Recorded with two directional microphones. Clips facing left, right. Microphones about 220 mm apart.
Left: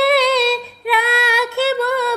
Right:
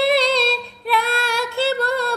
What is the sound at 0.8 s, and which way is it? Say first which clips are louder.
Female singing: left 2 dB; 60° left (ahead or behind).